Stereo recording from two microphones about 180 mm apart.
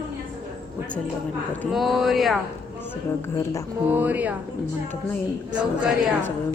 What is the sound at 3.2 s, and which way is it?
Speech, 15° left (ahead or behind).